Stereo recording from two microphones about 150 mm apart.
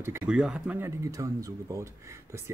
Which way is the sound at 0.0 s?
15° right (ahead or behind).